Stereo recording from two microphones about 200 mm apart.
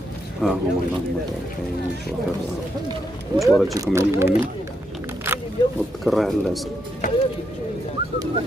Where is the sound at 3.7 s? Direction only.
15° right (ahead or behind).